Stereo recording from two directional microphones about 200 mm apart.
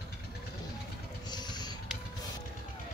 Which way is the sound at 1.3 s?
20° left (ahead or behind).